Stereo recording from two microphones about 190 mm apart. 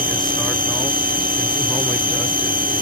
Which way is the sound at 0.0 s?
50° right (ahead or behind).